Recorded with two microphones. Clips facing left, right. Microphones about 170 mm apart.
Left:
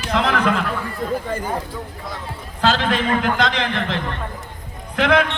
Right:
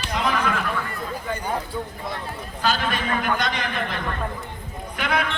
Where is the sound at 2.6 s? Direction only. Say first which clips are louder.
Left 5 dB; 85° left.